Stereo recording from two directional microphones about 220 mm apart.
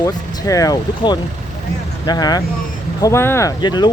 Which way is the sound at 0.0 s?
15° left (ahead or behind).